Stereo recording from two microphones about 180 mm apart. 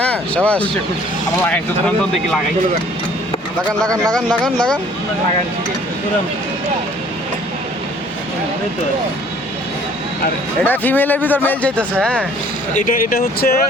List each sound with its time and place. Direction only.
0.0 s speech: 5° left (ahead or behind)
3.8 s speech: 5° left (ahead or behind)
10.6 s speech: 10° left (ahead or behind)
12.7 s speech: 50° left (ahead or behind)